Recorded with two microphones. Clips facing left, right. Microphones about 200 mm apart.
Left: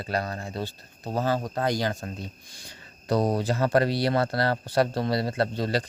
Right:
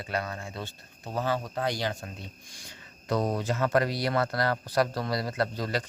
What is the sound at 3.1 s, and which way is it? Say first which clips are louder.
Speech: left 4 dB; 35° left (ahead or behind).